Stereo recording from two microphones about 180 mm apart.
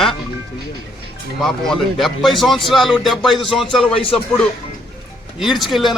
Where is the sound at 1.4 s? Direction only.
Centre (ahead or behind).